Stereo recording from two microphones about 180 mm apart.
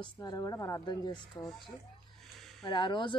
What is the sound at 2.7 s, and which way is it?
Speech, 25° left (ahead or behind).